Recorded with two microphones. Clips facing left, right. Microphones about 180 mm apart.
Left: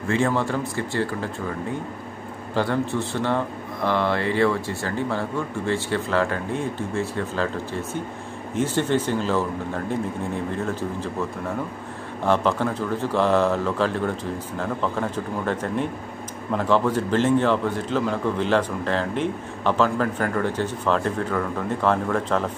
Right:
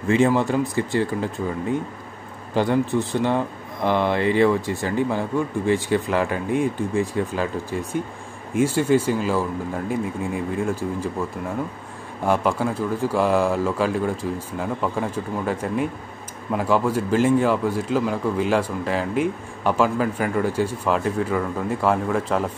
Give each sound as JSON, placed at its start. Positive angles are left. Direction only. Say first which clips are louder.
{"t": 0.1, "sound": "speech", "louder": "right 4 dB", "side_deg": -15}
{"t": 2.5, "sound": "speech", "louder": "right 3 dB", "side_deg": -15}
{"t": 8.5, "sound": "speech", "louder": "right 4 dB", "side_deg": -10}
{"t": 12.3, "sound": "speech", "louder": "even", "side_deg": -10}